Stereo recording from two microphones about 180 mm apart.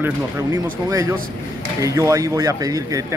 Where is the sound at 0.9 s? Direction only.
20° right (ahead or behind).